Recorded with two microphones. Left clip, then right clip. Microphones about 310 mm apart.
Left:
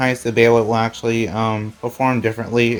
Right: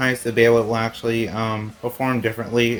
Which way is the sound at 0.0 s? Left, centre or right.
Left.